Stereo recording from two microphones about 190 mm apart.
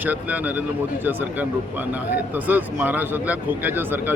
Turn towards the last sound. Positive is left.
turn(degrees=-10)  # may be behind; listen again after turning